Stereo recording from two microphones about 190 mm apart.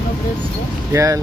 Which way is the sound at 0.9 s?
15° right (ahead or behind).